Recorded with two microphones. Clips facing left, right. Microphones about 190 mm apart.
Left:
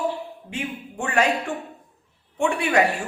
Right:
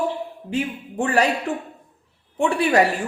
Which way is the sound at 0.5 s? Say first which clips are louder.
Right 6 dB; 35° right (ahead or behind).